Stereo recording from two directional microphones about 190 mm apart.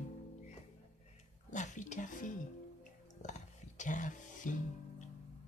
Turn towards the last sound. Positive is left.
turn(degrees=40)  # may be behind; listen again after turning